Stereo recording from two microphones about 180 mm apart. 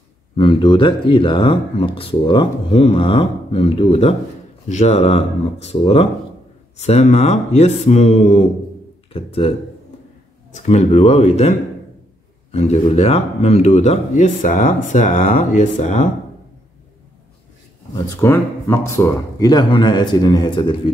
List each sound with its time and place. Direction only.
0.4 s speech: 30° left (ahead or behind)
10.5 s speech: 40° left (ahead or behind)
17.9 s speech: 15° left (ahead or behind)